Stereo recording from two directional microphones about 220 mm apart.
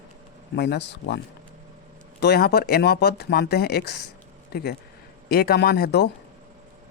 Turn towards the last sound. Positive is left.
turn(degrees=50)  # may be behind; listen again after turning